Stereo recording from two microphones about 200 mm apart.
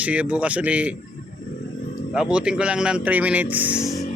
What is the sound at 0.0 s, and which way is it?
Speech, 5° right (ahead or behind).